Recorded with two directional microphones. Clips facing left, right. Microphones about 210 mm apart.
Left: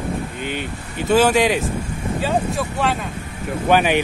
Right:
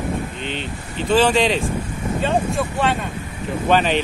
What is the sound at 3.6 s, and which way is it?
Speech, 10° left (ahead or behind).